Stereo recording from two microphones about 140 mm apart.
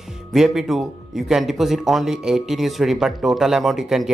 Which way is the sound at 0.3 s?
Centre (ahead or behind).